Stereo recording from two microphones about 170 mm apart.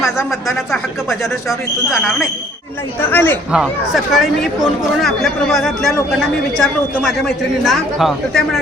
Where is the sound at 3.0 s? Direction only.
10° left (ahead or behind).